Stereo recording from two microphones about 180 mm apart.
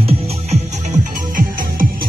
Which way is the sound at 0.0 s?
35° right (ahead or behind).